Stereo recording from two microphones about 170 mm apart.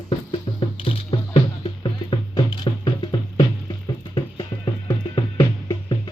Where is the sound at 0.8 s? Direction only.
35° left (ahead or behind).